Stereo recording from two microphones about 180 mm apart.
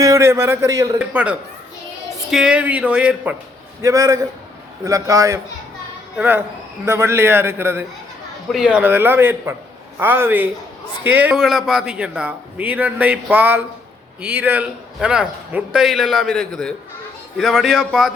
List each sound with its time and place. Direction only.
0.0 s a man's voice: 15° right (ahead or behind)
0.9 s a man's voice: 5° right (ahead or behind)
3.8 s a man's voice: 20° right (ahead or behind); by 18.1 s centre (ahead or behind)